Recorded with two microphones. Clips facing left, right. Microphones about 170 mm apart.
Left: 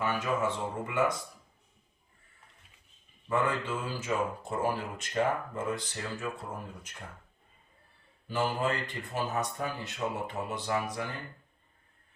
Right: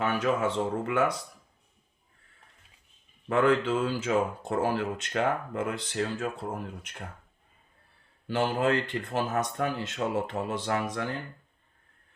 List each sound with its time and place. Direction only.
0.0 s speech: 75° right (ahead or behind)
3.2 s speech: 75° right (ahead or behind)
8.3 s speech: 70° right (ahead or behind)